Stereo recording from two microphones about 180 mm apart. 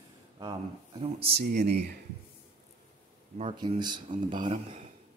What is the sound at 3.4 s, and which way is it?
Speech, 25° right (ahead or behind).